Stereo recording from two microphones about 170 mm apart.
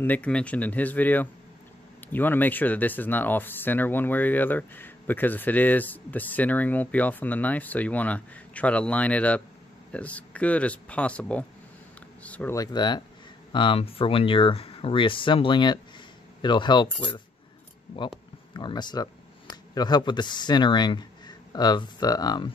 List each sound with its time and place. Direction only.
0.0 s speech: 10° left (ahead or behind)
12.2 s a sound: 10° left (ahead or behind)
12.5 s speech: 25° left (ahead or behind)
18.5 s speech: 25° left (ahead or behind)